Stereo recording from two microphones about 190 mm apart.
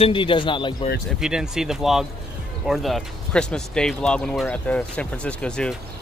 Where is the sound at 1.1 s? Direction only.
5° right (ahead or behind).